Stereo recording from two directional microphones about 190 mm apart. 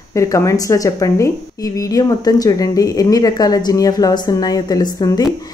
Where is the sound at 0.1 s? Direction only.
15° left (ahead or behind).